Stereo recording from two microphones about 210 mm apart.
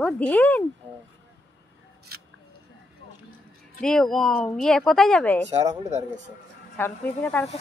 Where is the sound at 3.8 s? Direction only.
Centre (ahead or behind).